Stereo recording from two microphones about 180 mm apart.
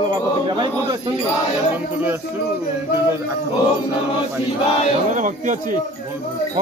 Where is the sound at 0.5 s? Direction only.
25° right (ahead or behind).